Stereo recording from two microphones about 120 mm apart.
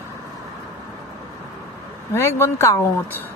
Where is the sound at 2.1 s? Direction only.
20° left (ahead or behind).